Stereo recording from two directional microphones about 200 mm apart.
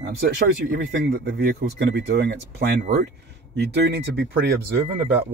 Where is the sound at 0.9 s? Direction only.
55° right (ahead or behind).